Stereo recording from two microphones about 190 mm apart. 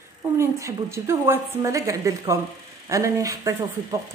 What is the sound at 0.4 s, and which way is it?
Speech, 15° right (ahead or behind).